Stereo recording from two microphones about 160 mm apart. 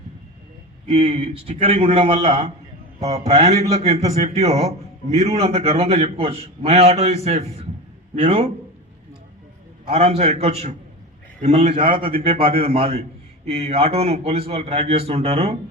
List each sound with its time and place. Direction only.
0.9 s a man's voice: 40° right (ahead or behind)
9.9 s a man's voice: 40° right (ahead or behind)